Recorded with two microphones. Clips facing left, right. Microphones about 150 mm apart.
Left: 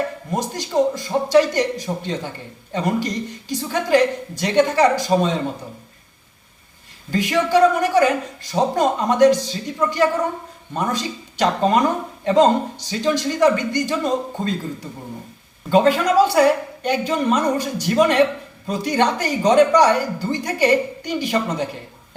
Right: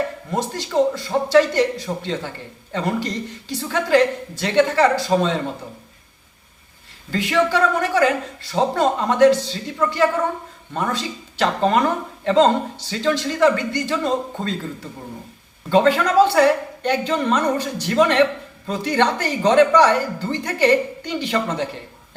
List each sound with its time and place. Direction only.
0.3 s speech: 15° left (ahead or behind)
7.1 s speech: 15° left (ahead or behind)
15.7 s speech: 10° left (ahead or behind)